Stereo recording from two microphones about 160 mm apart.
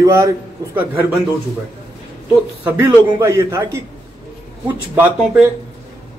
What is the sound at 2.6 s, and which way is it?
A man's voice, 10° right (ahead or behind).